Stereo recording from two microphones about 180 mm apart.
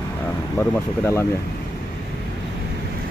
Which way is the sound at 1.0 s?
15° left (ahead or behind).